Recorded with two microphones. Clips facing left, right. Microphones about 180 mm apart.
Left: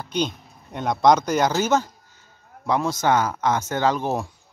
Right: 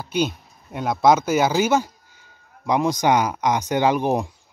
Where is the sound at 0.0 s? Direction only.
10° right (ahead or behind).